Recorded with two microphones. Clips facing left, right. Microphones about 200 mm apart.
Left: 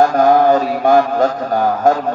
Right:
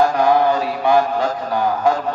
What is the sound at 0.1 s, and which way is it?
Mantra, 45° left (ahead or behind).